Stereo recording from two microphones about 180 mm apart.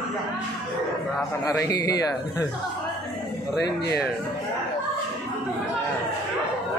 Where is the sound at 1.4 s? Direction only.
20° left (ahead or behind).